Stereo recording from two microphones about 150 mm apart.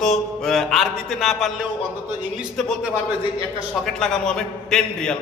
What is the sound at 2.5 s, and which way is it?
Speech, centre (ahead or behind).